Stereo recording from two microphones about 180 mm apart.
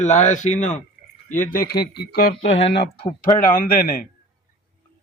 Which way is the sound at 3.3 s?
50° left (ahead or behind).